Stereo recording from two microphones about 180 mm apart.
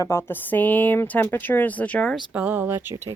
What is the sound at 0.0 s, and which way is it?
Speech, 15° left (ahead or behind).